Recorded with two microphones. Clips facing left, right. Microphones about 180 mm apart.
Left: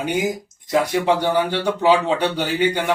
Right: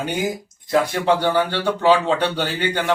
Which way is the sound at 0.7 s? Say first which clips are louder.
Even; 15° left (ahead or behind).